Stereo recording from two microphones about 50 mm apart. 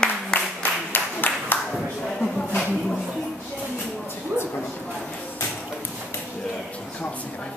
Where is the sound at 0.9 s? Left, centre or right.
Left.